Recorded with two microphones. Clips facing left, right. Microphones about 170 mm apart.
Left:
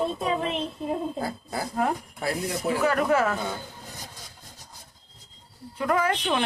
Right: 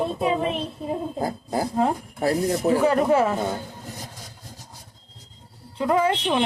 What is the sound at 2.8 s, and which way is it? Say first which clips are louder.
Speech: right 1 dB; 25° right (ahead or behind).